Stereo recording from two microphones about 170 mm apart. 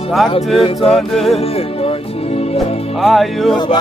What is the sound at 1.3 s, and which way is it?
Speech, 35° left (ahead or behind).